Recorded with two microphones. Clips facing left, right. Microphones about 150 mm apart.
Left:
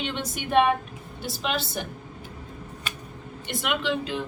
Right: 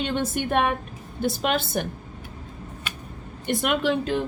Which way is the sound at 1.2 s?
50° right (ahead or behind).